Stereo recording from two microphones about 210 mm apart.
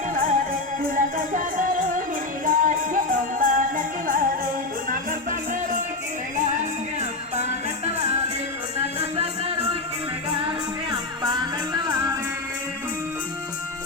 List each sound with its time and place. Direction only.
0.1 s music: 40° right (ahead or behind)
8.8 s music: 30° right (ahead or behind)